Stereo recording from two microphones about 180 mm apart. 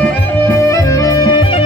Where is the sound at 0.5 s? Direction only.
15° left (ahead or behind).